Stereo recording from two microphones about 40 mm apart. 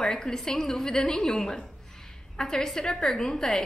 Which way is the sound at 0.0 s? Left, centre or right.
Centre.